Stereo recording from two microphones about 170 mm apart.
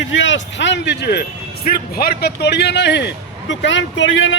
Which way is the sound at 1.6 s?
60° left (ahead or behind).